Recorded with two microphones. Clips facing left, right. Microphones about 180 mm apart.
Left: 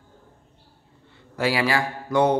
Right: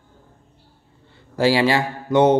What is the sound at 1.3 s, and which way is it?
Speech, 30° right (ahead or behind).